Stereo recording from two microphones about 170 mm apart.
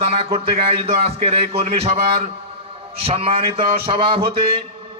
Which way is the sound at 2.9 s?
35° right (ahead or behind).